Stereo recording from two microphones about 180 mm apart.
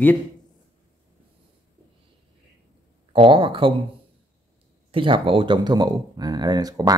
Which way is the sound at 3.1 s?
30° right (ahead or behind).